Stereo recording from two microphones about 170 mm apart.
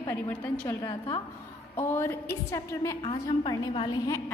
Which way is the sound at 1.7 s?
15° left (ahead or behind).